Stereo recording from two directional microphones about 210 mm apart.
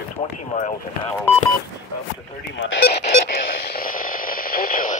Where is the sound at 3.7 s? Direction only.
40° left (ahead or behind).